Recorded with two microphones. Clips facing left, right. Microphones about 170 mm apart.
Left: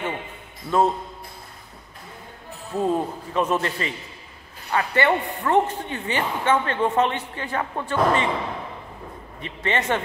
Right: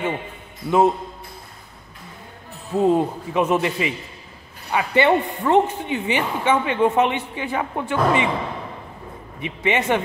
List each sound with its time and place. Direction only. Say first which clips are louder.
0.7 s speech: right 3 dB; 10° right (ahead or behind)
2.8 s speech: right 5 dB; 15° right (ahead or behind)
9.4 s speech: right 4 dB; 10° right (ahead or behind)